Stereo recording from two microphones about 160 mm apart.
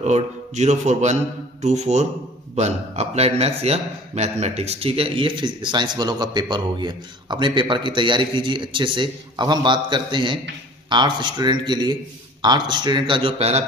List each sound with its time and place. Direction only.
0.0 s a man's voice: 45° right (ahead or behind)
1.6 s mantra: 45° right (ahead or behind)
2.5 s a man's voice: 45° right (ahead or behind)